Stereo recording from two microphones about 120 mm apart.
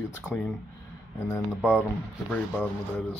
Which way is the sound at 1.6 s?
10° right (ahead or behind).